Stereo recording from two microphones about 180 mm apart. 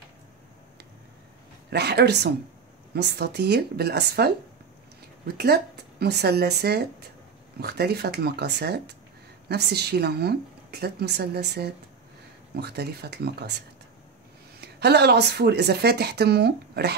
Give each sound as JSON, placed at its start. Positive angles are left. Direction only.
{"t": 1.7, "sound": "speech", "side_deg": -65}
{"t": 14.6, "sound": "speech", "side_deg": -65}